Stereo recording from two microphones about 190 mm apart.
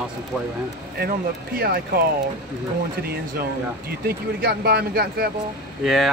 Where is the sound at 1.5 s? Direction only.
50° right (ahead or behind).